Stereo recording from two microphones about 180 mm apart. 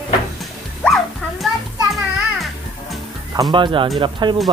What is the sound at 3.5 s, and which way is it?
Speech, 25° right (ahead or behind).